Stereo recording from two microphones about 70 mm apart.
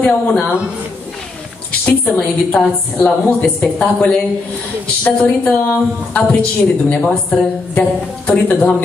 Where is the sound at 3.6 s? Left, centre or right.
Centre.